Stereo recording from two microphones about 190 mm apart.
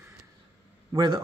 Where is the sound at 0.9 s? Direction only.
25° right (ahead or behind).